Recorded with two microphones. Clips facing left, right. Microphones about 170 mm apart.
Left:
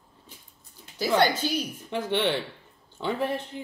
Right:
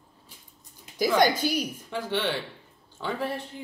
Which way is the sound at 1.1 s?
10° right (ahead or behind).